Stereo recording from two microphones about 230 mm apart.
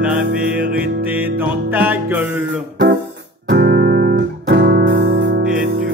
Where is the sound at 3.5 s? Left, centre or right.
Right.